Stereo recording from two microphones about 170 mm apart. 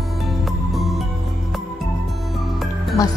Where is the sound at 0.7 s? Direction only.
Centre (ahead or behind).